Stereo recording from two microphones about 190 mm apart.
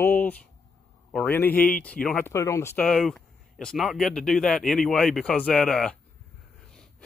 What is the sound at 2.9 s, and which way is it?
Speech, centre (ahead or behind).